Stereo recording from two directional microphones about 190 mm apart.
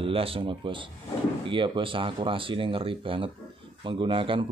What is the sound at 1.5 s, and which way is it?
Speech, 25° right (ahead or behind).